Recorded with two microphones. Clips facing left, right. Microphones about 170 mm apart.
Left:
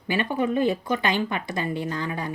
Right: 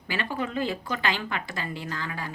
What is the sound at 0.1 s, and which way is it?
A woman's voice, 20° left (ahead or behind).